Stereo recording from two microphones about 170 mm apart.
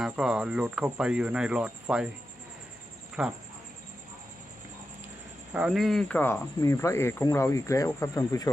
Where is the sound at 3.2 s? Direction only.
5° right (ahead or behind).